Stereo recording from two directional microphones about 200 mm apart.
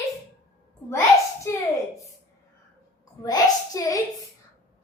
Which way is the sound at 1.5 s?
10° left (ahead or behind).